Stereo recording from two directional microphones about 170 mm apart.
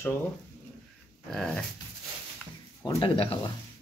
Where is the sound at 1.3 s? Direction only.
5° left (ahead or behind).